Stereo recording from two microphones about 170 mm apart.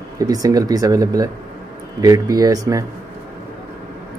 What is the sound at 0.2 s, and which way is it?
Speech, 20° right (ahead or behind).